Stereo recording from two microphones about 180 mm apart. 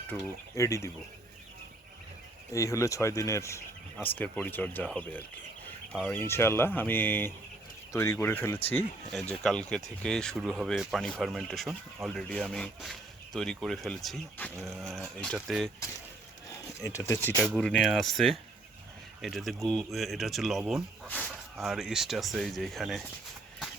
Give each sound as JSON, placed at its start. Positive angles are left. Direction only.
{"t": 0.1, "sound": "speech", "side_deg": 15}
{"t": 2.5, "sound": "speech", "side_deg": 15}
{"t": 14.5, "sound": "a sound", "side_deg": -15}
{"t": 15.2, "sound": "speech", "side_deg": 0}
{"t": 16.9, "sound": "speech", "side_deg": 15}